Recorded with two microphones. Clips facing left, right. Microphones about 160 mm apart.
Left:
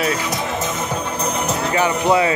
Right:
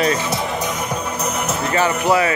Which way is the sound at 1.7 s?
15° left (ahead or behind).